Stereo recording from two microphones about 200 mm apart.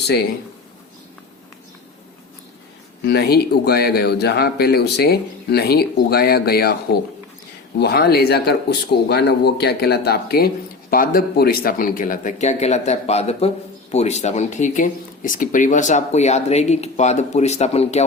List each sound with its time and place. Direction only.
3.0 s speech: 55° left (ahead or behind); by 18.0 s 35° left (ahead or behind)